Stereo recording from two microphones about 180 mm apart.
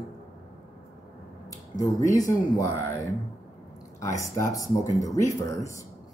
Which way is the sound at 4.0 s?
15° left (ahead or behind).